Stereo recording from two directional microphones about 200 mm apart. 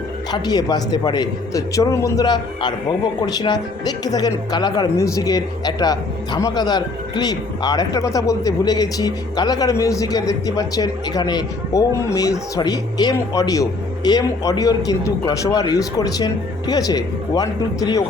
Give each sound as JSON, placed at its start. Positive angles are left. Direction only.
{"t": 0.3, "sound": "a man's voice", "side_deg": 20}